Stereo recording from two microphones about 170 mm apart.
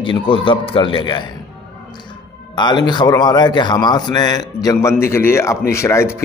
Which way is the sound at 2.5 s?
25° left (ahead or behind).